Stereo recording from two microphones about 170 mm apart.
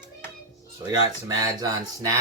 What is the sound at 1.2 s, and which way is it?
Speech, 20° right (ahead or behind).